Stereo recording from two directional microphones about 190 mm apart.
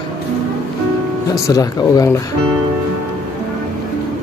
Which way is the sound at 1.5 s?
20° left (ahead or behind).